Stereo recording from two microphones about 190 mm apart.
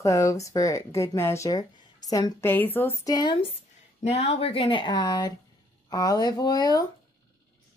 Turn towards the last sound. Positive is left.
turn(degrees=20)  # may be behind; listen again after turning